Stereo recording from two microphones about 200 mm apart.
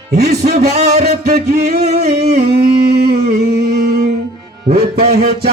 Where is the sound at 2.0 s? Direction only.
50° right (ahead or behind).